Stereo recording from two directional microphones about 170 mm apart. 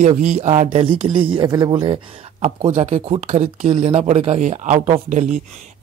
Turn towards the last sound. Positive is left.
turn(degrees=-45)  # may be behind; listen again after turning